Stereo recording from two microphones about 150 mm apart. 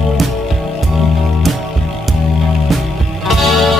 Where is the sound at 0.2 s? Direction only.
Centre (ahead or behind).